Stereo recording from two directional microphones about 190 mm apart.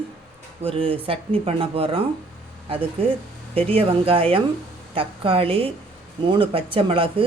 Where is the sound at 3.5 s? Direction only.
30° right (ahead or behind).